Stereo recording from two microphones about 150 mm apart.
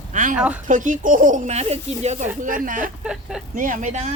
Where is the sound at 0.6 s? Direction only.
60° right (ahead or behind).